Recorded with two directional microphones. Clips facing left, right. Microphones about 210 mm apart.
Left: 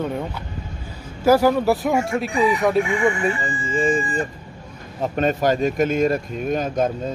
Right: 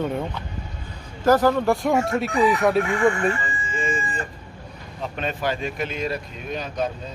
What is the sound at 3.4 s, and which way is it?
Chicken, 35° left (ahead or behind).